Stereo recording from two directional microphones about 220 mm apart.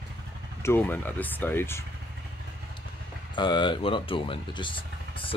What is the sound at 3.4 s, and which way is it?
Speech, 20° left (ahead or behind).